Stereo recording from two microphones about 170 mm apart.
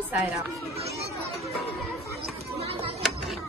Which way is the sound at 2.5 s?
35° right (ahead or behind).